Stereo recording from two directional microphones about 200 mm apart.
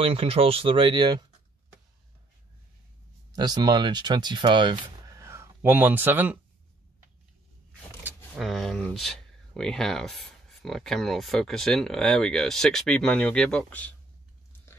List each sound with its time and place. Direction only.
0.0 s speech: 25° right (ahead or behind)
3.3 s speech: 20° right (ahead or behind)
8.2 s speech: centre (ahead or behind)